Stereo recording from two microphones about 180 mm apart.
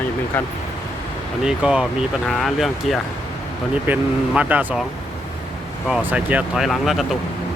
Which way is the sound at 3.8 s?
10° right (ahead or behind).